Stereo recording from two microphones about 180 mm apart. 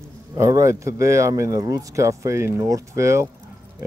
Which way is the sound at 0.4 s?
15° right (ahead or behind).